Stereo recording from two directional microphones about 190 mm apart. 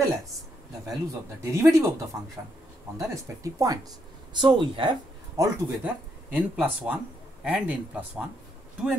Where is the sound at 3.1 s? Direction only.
15° right (ahead or behind).